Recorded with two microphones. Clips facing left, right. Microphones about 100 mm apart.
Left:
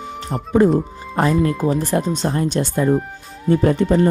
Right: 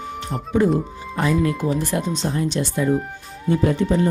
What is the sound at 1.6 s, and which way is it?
Speech, 35° left (ahead or behind).